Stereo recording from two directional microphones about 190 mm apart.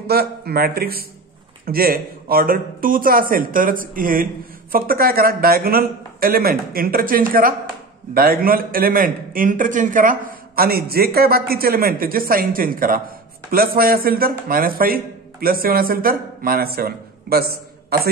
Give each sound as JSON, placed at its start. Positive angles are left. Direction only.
{"t": 0.0, "sound": "a man's voice", "side_deg": -55}